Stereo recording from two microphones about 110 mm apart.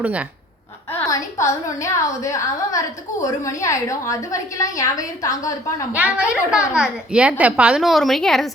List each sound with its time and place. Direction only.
0.0 s a woman's voice: 10° right (ahead or behind)
1.0 s a woman's voice: 30° left (ahead or behind)
5.9 s a woman's voice: 10° right (ahead or behind)